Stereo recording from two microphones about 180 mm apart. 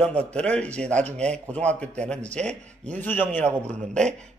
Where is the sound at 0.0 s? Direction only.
5° left (ahead or behind).